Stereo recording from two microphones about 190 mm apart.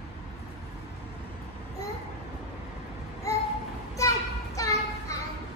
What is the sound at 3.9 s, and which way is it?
Children playing, 15° left (ahead or behind).